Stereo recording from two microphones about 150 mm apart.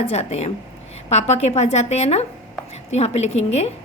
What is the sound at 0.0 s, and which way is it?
A woman's voice, 45° left (ahead or behind).